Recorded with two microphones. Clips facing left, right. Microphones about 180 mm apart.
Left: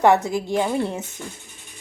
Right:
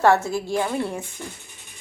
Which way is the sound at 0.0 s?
15° left (ahead or behind).